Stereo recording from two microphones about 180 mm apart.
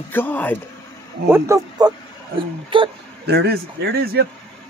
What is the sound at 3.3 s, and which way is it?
A man's voice, 65° right (ahead or behind).